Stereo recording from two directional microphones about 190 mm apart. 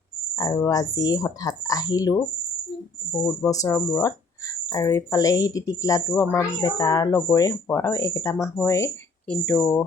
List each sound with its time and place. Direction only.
0.3 s speech: 20° left (ahead or behind)